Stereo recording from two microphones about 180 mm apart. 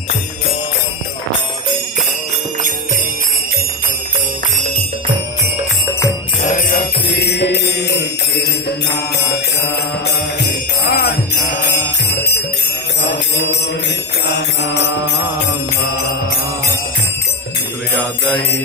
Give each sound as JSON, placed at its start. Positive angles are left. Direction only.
{"t": 7.1, "sound": "music", "side_deg": 70}
{"t": 9.1, "sound": "mantra", "side_deg": 65}
{"t": 11.7, "sound": "music", "side_deg": 65}
{"t": 13.0, "sound": "mantra", "side_deg": 75}